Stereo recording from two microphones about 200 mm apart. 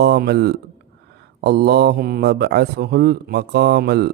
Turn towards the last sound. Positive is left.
turn(degrees=-55)  # may be behind; listen again after turning